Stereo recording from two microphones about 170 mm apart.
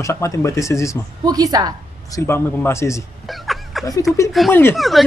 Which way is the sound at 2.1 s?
15° left (ahead or behind).